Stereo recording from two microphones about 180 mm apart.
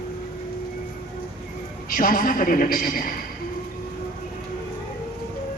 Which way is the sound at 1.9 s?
50° left (ahead or behind).